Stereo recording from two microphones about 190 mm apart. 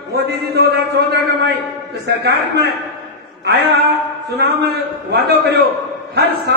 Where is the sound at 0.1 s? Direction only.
55° right (ahead or behind).